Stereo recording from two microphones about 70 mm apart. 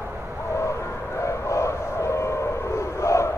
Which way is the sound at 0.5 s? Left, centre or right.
Left.